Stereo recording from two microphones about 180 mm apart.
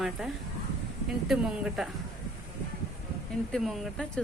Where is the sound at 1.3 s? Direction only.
Centre (ahead or behind).